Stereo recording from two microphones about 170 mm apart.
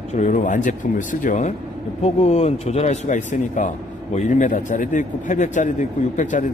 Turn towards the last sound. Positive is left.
turn(degrees=50)  # may be behind; listen again after turning